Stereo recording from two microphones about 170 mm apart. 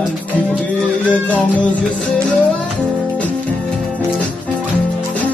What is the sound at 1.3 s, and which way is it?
Music, 10° left (ahead or behind).